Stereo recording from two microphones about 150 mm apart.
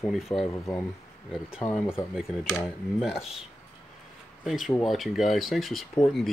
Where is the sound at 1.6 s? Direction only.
5° left (ahead or behind).